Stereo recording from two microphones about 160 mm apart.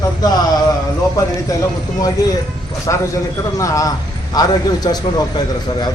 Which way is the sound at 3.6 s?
20° left (ahead or behind).